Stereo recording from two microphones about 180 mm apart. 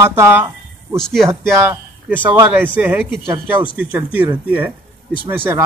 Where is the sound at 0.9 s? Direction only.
Centre (ahead or behind).